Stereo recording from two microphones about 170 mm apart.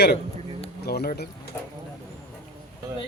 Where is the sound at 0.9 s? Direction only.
70° left (ahead or behind).